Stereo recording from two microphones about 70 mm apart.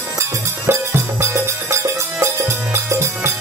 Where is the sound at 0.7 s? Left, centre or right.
Right.